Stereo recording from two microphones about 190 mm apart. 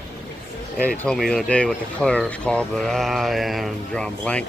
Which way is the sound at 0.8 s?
10° left (ahead or behind).